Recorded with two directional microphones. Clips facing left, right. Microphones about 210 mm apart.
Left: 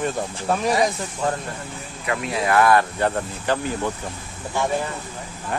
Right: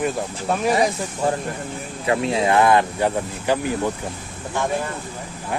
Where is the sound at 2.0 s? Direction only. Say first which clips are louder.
Right 4 dB; 30° right (ahead or behind); by 3.9 s 15° right (ahead or behind).